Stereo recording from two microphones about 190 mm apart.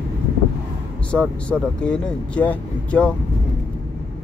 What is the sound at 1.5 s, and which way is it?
Speech, 5° left (ahead or behind).